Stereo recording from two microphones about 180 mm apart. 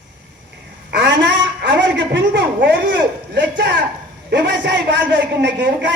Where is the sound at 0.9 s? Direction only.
70° right (ahead or behind).